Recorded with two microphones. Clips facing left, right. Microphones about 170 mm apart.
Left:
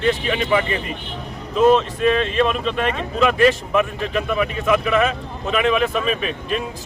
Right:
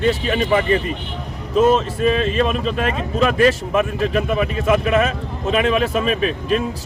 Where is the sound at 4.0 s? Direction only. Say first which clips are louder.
Right 3 dB; 40° right (ahead or behind).